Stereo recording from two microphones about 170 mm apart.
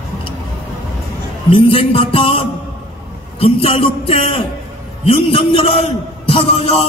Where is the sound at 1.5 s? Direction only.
30° left (ahead or behind).